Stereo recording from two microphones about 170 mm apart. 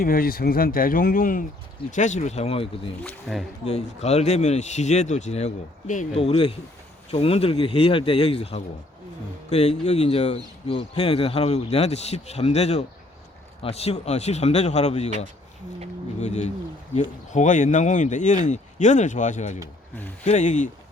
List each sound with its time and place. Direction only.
0.0 s speech: 60° left (ahead or behind); by 2.9 s 35° left (ahead or behind)
3.0 s speech: 10° left (ahead or behind)
3.7 s speech: 40° left (ahead or behind)
16.2 s speech: 40° left (ahead or behind)